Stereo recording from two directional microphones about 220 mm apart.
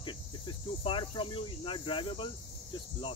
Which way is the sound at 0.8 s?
25° left (ahead or behind).